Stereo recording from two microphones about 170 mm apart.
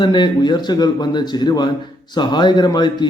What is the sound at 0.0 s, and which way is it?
A man's voice, 25° left (ahead or behind).